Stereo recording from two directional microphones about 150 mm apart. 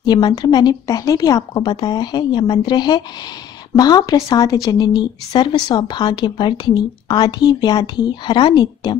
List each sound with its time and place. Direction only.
0.0 s speech: 25° left (ahead or behind)